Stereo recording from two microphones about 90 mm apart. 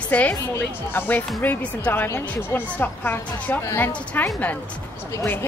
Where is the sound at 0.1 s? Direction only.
15° left (ahead or behind).